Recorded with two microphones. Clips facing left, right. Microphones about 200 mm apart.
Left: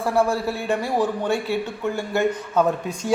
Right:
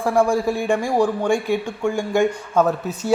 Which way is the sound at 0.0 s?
15° right (ahead or behind).